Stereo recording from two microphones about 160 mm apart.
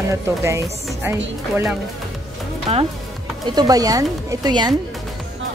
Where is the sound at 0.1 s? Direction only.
20° right (ahead or behind).